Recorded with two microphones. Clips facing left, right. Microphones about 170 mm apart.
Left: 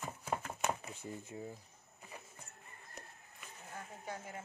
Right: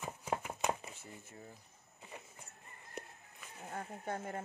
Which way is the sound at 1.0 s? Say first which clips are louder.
Left 7 dB; 15° left (ahead or behind).